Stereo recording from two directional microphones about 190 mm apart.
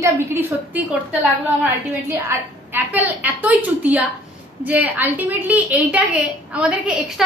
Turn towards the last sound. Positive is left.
turn(degrees=-5)  # may be behind; listen again after turning